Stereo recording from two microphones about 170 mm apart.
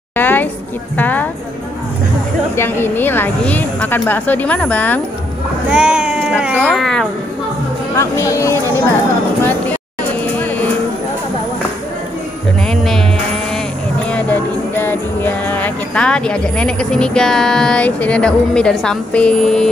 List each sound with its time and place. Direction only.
0.1 s a woman's voice: 10° left (ahead or behind)
2.5 s a woman's voice: 15° left (ahead or behind)
5.7 s speech: 5° right (ahead or behind)
8.0 s a woman's voice: 15° left (ahead or behind)
12.6 s jingle bell: centre (ahead or behind)
14.0 s music: 10° left (ahead or behind)